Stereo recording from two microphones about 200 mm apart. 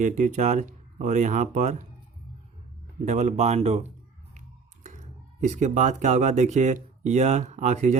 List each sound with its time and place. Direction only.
0.0 s speech: 40° right (ahead or behind)
3.0 s speech: 35° right (ahead or behind)
4.4 s a sound: 35° right (ahead or behind)
5.4 s speech: 35° right (ahead or behind)